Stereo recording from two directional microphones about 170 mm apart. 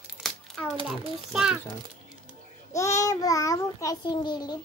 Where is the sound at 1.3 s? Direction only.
Centre (ahead or behind).